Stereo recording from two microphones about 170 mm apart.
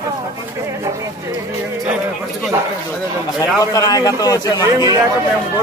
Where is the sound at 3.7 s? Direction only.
20° left (ahead or behind).